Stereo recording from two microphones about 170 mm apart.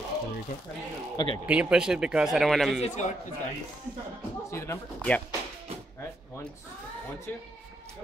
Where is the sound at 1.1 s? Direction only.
30° left (ahead or behind).